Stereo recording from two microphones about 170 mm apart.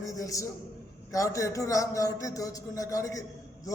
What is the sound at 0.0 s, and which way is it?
A man's voice, 20° left (ahead or behind).